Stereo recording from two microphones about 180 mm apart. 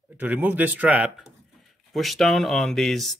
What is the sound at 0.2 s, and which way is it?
Speech, 10° right (ahead or behind).